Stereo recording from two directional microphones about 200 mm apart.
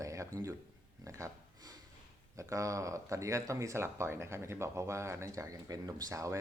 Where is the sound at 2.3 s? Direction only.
15° right (ahead or behind).